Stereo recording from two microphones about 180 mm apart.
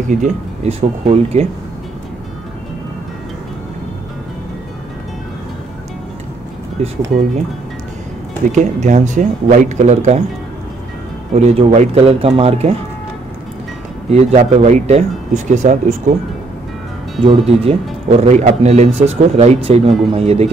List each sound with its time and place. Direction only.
0.1 s a man's voice: 40° right (ahead or behind)
6.8 s a man's voice: 35° right (ahead or behind)
8.5 s speech: 45° right (ahead or behind)
11.3 s a man's voice: 40° right (ahead or behind)
14.1 s a man's voice: 40° right (ahead or behind)
17.2 s a man's voice: 30° right (ahead or behind)